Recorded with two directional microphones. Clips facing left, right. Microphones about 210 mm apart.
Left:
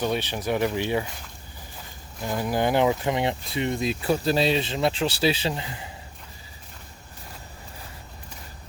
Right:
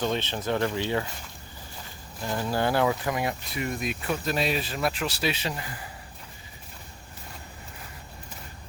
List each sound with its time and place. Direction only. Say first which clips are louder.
0.0 s speech: left 2 dB; 15° left (ahead or behind)
2.2 s speech: left 2 dB; 15° left (ahead or behind)